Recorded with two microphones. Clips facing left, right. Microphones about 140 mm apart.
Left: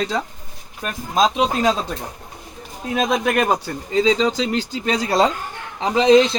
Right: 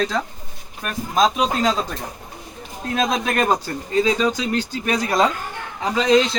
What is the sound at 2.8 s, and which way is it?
Speech, 10° left (ahead or behind).